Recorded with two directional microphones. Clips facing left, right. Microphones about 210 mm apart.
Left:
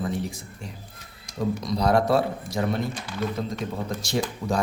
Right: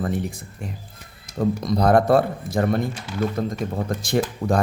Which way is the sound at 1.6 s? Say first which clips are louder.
Right 4 dB; 50° right (ahead or behind).